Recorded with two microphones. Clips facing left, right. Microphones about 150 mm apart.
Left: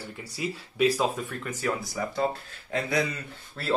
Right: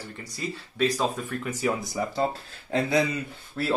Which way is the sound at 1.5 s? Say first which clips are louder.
Right 3 dB; 10° right (ahead or behind).